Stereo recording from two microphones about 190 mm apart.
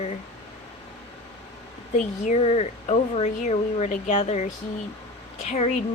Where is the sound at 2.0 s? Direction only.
35° left (ahead or behind).